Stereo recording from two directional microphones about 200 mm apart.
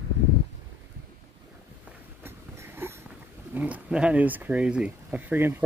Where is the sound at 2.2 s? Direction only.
10° right (ahead or behind).